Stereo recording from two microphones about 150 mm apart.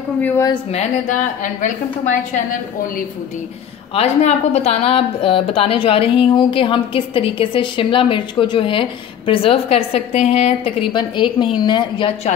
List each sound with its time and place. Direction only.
0.7 s a woman's voice: 50° left (ahead or behind)
3.9 s a woman's voice: 45° left (ahead or behind); by 12.1 s 30° left (ahead or behind)